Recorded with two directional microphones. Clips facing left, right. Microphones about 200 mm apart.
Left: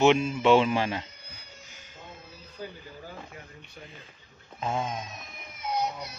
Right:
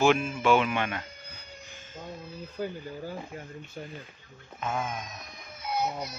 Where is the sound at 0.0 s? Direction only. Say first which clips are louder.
Left 2 dB; 20° left (ahead or behind).